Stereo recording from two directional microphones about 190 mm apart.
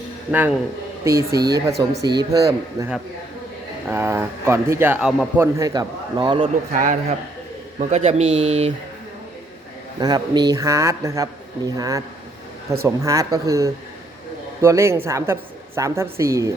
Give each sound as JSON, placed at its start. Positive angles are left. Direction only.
{"t": 0.3, "sound": "a man's voice", "side_deg": -10}
{"t": 5.5, "sound": "a man's voice", "side_deg": -20}
{"t": 6.7, "sound": "a man's voice", "side_deg": -45}
{"t": 10.0, "sound": "speech", "side_deg": -20}